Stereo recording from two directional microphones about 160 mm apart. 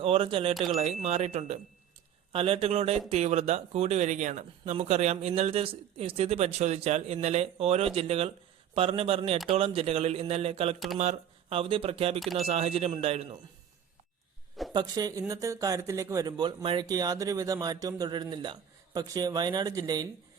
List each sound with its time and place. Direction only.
0.0 s speech: 35° right (ahead or behind)
0.5 s speech: centre (ahead or behind)
0.8 s speech: 40° right (ahead or behind)
14.7 s speech: 25° right (ahead or behind)